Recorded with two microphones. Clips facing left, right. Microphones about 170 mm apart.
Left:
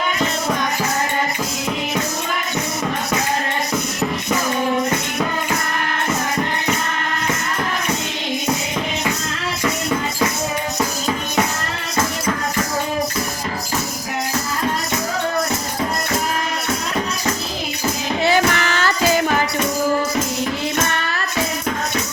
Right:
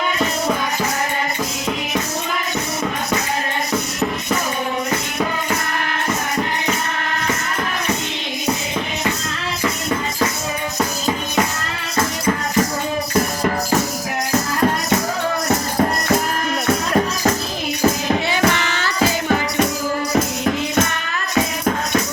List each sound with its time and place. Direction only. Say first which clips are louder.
18.3 s child singing: left 2 dB; 45° left (ahead or behind)